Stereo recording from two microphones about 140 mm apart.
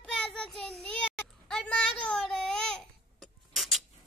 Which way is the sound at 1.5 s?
5° left (ahead or behind).